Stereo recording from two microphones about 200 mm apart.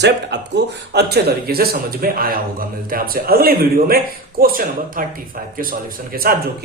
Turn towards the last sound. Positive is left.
turn(degrees=-45)  # may be behind; listen again after turning